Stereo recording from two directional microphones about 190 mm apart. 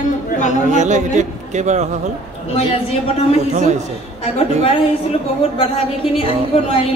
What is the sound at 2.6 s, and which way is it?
Speech, 30° left (ahead or behind).